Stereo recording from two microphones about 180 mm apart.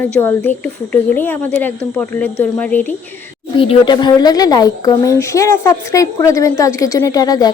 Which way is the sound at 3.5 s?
25° left (ahead or behind).